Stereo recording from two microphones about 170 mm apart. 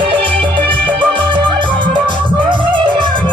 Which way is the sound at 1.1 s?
30° right (ahead or behind).